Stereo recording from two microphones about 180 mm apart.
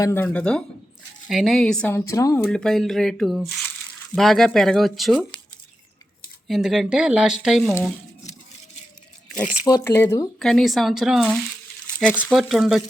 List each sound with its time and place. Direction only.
0.0 s speech: 15° left (ahead or behind)
2.0 s speech: 20° left (ahead or behind)
2.4 s speech: 5° left (ahead or behind)
6.5 s speech: centre (ahead or behind)
9.6 s speech: 20° left (ahead or behind)
10.4 s speech: centre (ahead or behind)